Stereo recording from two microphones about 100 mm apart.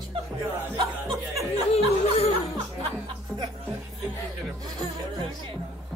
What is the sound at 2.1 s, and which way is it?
Speech, 80° left.